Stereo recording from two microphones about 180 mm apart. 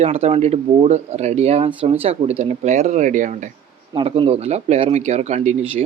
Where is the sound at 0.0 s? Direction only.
35° right (ahead or behind).